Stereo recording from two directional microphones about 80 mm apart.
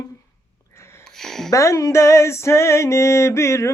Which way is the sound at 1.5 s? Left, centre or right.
Left.